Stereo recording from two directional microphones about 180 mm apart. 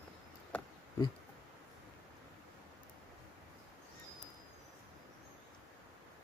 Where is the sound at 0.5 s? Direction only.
5° left (ahead or behind).